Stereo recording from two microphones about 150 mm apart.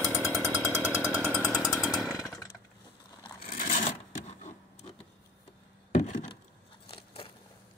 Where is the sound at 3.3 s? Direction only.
70° left (ahead or behind); by 4.6 s 50° left (ahead or behind).